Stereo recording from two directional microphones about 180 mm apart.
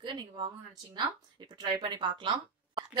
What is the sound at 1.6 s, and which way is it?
Speech, 25° right (ahead or behind).